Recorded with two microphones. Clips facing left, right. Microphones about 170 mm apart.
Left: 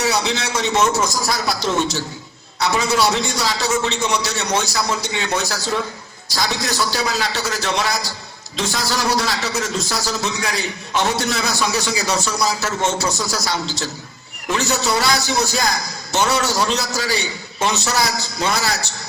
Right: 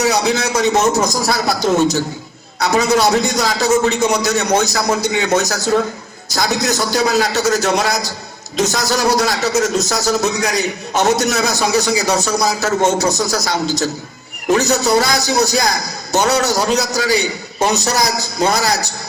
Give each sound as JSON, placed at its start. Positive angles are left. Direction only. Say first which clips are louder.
{"t": 0.0, "sound": "a man's voice", "louder": "right 5 dB", "side_deg": -40}